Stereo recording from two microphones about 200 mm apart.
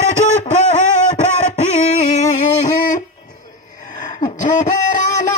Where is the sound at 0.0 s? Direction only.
35° left (ahead or behind).